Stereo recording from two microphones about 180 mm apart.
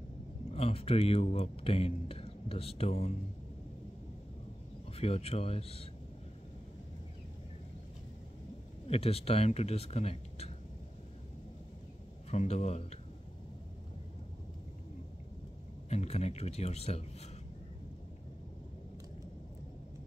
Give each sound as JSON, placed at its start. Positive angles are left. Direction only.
{"t": 0.5, "sound": "speech", "side_deg": 35}
{"t": 4.9, "sound": "speech", "side_deg": 35}
{"t": 8.8, "sound": "speech", "side_deg": 35}
{"t": 12.3, "sound": "speech", "side_deg": 40}
{"t": 15.9, "sound": "speech", "side_deg": 35}